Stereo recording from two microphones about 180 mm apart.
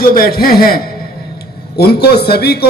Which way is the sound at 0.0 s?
55° left (ahead or behind).